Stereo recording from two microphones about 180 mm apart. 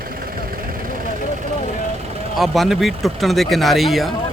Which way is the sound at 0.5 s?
50° right (ahead or behind).